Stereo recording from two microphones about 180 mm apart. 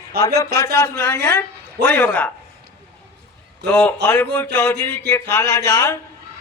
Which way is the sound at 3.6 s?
10° left (ahead or behind).